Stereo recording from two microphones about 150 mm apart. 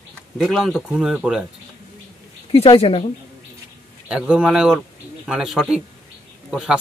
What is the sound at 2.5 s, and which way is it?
Speech, 40° left (ahead or behind).